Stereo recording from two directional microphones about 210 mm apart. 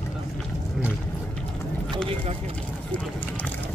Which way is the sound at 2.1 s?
30° right (ahead or behind).